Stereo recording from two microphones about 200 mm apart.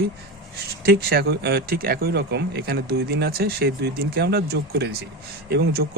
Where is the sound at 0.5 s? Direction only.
50° right (ahead or behind).